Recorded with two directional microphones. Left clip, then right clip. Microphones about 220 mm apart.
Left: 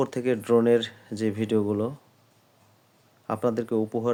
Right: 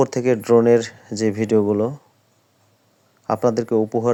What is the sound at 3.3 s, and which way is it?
Speech, 20° right (ahead or behind).